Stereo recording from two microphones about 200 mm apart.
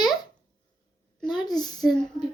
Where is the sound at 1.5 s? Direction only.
20° left (ahead or behind).